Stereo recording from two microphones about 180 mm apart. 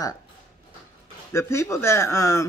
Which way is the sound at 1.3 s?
15° left (ahead or behind).